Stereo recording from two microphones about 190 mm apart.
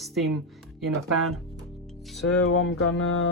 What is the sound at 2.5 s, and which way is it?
Music, 90° left.